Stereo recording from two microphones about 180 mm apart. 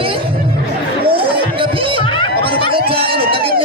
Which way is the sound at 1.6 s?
30° right (ahead or behind).